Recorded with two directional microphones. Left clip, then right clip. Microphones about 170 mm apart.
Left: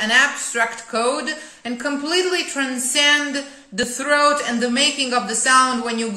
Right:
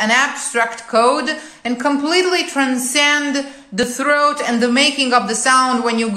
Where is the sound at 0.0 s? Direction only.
20° left (ahead or behind).